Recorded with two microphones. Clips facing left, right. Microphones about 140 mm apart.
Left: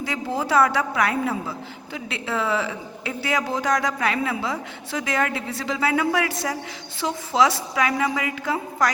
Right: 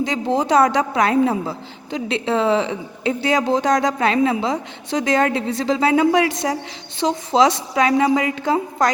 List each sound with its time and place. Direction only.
0.0 s a woman's voice: 25° right (ahead or behind)